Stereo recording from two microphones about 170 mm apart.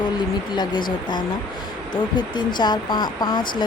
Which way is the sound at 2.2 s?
25° left (ahead or behind).